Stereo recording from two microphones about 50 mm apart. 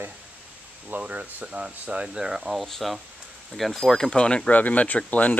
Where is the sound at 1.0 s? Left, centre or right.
Right.